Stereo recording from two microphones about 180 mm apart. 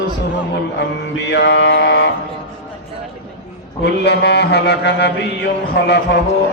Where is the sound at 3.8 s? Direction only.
70° left (ahead or behind).